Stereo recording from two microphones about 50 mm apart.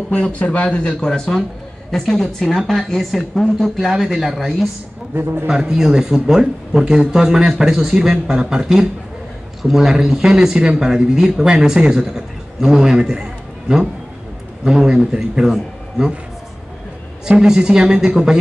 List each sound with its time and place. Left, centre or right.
0.3 s speech: left
1.0 s speech: centre
5.1 s a man's voice: right
5.5 s a man's voice: centre
14.6 s a man's voice: centre
17.3 s a man's voice: centre